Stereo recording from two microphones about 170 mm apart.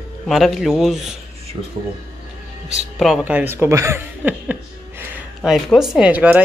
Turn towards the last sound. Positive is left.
turn(degrees=-10)  # may be behind; listen again after turning